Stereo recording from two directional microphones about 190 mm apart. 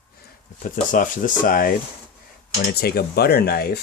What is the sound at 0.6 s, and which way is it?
Speech, 45° left (ahead or behind).